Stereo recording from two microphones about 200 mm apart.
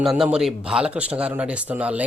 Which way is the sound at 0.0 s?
Centre (ahead or behind).